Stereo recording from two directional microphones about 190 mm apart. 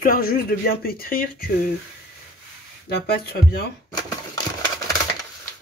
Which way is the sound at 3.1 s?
55° left (ahead or behind).